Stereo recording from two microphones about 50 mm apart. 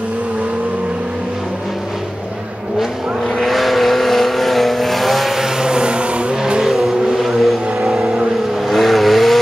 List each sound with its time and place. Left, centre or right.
3.3 s vehicle: centre; by 6.3 s right
6.4 s vehicle: centre